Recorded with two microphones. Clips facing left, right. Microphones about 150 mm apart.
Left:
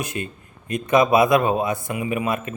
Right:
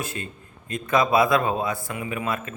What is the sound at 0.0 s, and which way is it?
A man's voice, 20° left (ahead or behind).